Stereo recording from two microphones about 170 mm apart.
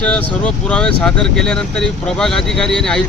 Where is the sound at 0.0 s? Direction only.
5° left (ahead or behind).